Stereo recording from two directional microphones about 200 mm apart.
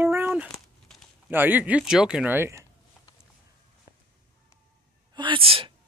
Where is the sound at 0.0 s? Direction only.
10° right (ahead or behind).